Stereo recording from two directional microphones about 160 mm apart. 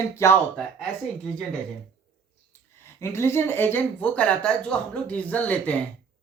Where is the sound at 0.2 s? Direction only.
20° left (ahead or behind).